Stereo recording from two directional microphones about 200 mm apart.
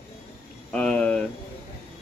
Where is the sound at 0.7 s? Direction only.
5° left (ahead or behind).